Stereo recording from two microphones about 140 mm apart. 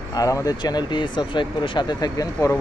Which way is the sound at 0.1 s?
25° left (ahead or behind).